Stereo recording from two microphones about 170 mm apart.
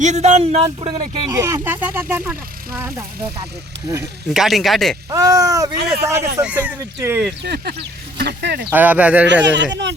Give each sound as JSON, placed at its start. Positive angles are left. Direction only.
{"t": 0.0, "sound": "speech", "side_deg": -45}
{"t": 1.3, "sound": "speech", "side_deg": -20}
{"t": 4.3, "sound": "speech", "side_deg": 0}
{"t": 5.1, "sound": "speech", "side_deg": -20}
{"t": 7.4, "sound": "speech", "side_deg": -70}
{"t": 8.7, "sound": "speech", "side_deg": -10}
{"t": 9.2, "sound": "speech", "side_deg": -90}